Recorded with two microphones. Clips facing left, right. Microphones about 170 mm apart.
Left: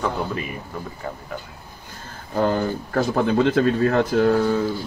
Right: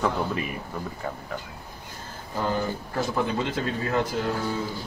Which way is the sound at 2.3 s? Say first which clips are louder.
Left 6 dB; 60° left (ahead or behind).